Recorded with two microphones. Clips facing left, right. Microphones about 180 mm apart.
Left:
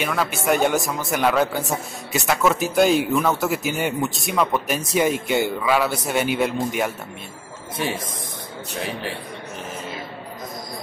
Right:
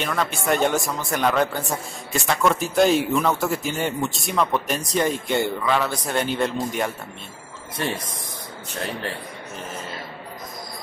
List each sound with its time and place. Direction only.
0.0 s a man's voice: 5° left (ahead or behind)